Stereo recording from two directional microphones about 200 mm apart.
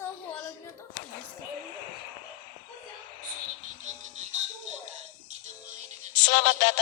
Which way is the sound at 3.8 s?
35° right (ahead or behind).